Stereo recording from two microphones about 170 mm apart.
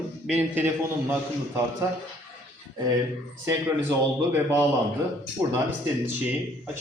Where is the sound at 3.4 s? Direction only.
15° right (ahead or behind).